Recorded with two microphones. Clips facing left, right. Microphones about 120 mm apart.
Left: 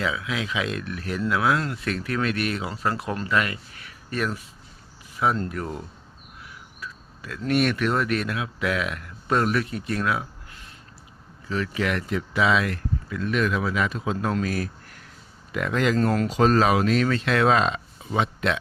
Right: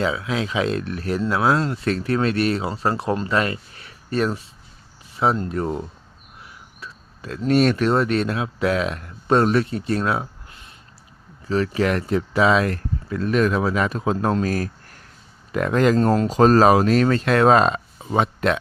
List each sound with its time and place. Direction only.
0.0 s speech: 35° right (ahead or behind)
14.4 s a sound: 40° right (ahead or behind)
15.5 s speech: 40° right (ahead or behind)
16.3 s speech: 40° right (ahead or behind)